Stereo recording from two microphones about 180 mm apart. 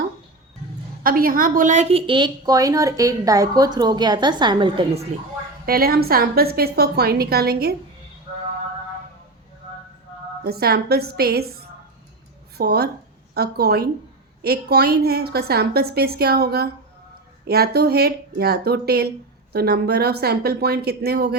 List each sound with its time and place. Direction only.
1.0 s a woman's voice: 55° right (ahead or behind); by 5.0 s 25° right (ahead or behind)
5.6 s a woman's voice: 55° right (ahead or behind)
10.4 s a woman's voice: 60° right (ahead or behind)
12.5 s a woman's voice: 60° right (ahead or behind)